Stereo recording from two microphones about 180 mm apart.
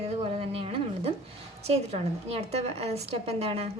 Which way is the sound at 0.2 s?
30° right (ahead or behind).